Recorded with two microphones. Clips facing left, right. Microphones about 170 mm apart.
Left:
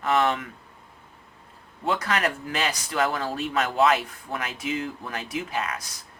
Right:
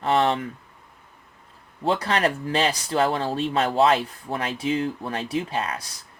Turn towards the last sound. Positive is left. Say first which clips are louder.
# right 2 dB
turn(degrees=-30)  # may be behind; listen again after turning